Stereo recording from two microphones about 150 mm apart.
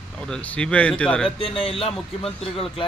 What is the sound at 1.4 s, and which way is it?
Speech, 35° left (ahead or behind).